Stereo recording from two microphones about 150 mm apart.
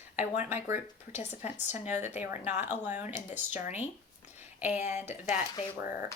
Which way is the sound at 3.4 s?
15° right (ahead or behind).